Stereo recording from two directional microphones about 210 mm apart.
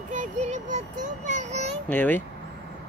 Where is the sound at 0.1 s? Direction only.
35° right (ahead or behind).